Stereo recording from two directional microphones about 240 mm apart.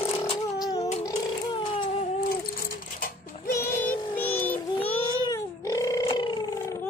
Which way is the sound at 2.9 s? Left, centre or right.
Left.